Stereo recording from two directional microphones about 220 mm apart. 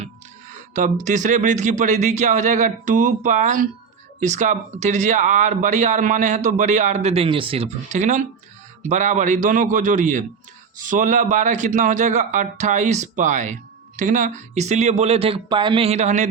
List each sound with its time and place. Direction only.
0.7 s a man's voice: 35° right (ahead or behind)